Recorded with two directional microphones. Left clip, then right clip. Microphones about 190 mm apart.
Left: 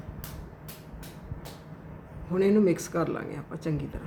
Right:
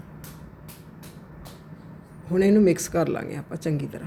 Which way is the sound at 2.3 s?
25° right (ahead or behind).